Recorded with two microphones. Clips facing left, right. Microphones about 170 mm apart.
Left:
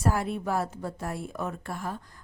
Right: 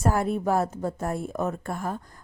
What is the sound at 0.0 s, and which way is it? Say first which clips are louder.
A woman's voice: right 4 dB; 45° right (ahead or behind).